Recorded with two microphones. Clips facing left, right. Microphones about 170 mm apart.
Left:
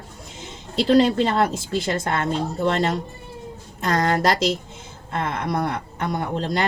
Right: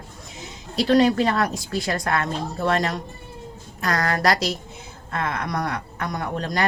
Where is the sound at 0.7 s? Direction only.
25° left (ahead or behind).